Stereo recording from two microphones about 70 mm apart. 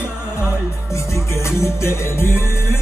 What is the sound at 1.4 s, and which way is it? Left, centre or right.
Music, left.